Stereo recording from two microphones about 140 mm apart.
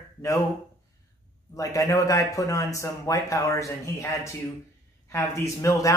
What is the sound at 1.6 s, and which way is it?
Speech, 25° left (ahead or behind).